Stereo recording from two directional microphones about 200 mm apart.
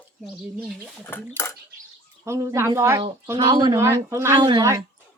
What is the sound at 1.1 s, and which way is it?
Speech, 10° left (ahead or behind).